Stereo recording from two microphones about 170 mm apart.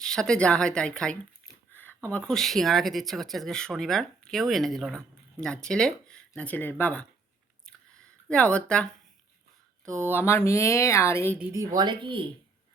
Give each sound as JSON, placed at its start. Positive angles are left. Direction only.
{"t": 0.0, "sound": "speech", "side_deg": 5}
{"t": 8.3, "sound": "speech", "side_deg": 5}
{"t": 9.8, "sound": "speech", "side_deg": -15}
{"t": 10.1, "sound": "speech", "side_deg": 15}
{"t": 11.5, "sound": "speech", "side_deg": -20}